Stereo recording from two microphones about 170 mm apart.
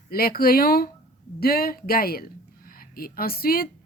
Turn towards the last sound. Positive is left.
turn(degrees=60)  # may be behind; listen again after turning